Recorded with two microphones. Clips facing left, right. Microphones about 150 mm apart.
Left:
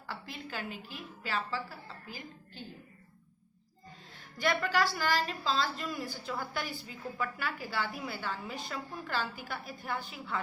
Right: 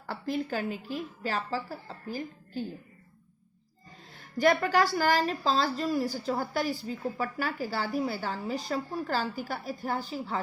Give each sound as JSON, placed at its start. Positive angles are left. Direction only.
{"t": 0.1, "sound": "a woman's voice", "side_deg": -45}
{"t": 4.4, "sound": "a woman's voice", "side_deg": -45}